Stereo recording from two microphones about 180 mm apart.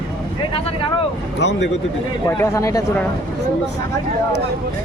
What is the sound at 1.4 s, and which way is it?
Speech, 80° left.